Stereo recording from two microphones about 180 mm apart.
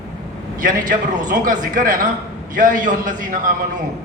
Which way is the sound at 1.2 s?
45° right (ahead or behind).